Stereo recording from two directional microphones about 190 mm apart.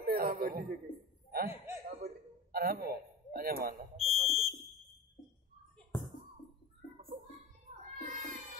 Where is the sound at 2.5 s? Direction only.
55° right (ahead or behind).